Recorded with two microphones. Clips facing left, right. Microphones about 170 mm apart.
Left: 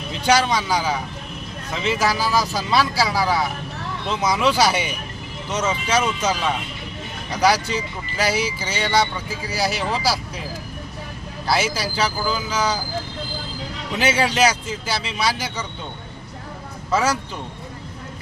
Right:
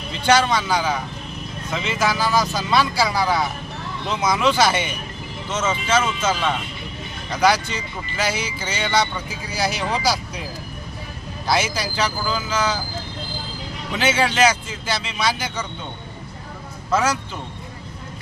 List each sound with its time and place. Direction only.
0.3 s speech: 10° left (ahead or behind)
11.4 s speech: 5° left (ahead or behind)
14.0 s speech: 10° left (ahead or behind)
16.9 s speech: 10° left (ahead or behind)